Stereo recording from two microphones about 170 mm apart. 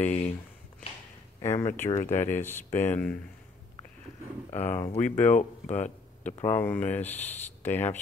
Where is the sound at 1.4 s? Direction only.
15° left (ahead or behind).